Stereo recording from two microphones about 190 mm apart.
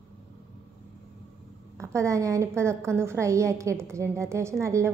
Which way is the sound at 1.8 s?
15° right (ahead or behind).